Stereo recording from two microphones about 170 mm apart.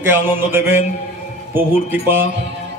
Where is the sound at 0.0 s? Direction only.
15° right (ahead or behind).